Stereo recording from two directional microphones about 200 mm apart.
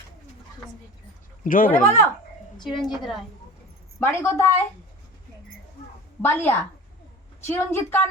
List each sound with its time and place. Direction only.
1.5 s speech: 45° left (ahead or behind)
2.7 s a woman's voice: centre (ahead or behind)
4.0 s a woman's voice: 10° left (ahead or behind)
6.2 s a woman's voice: 10° left (ahead or behind)